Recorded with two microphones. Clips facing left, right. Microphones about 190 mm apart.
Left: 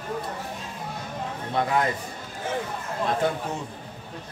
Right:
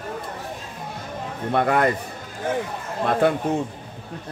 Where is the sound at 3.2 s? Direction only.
60° right (ahead or behind).